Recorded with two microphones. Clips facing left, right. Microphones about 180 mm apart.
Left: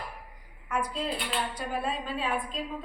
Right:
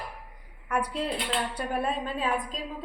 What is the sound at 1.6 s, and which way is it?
Speech, 50° right (ahead or behind).